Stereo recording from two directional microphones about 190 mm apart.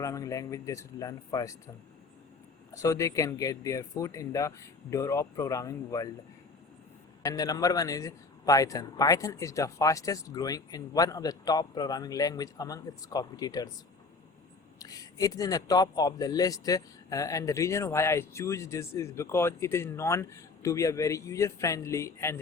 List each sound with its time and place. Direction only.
0.0 s speech: 15° left (ahead or behind)
2.7 s speech: 15° left (ahead or behind)
7.3 s a man's voice: 20° left (ahead or behind)
14.8 s speech: 20° left (ahead or behind)